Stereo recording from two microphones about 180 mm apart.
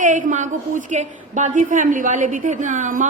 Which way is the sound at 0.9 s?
45° right (ahead or behind).